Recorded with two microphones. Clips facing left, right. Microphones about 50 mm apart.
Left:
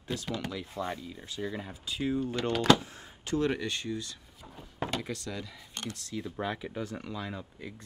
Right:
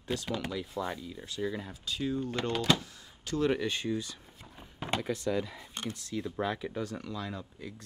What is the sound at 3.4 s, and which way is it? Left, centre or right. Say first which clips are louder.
Speech: right 2 dB; centre.